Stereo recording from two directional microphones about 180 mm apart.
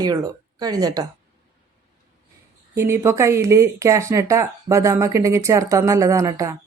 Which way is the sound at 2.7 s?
15° right (ahead or behind).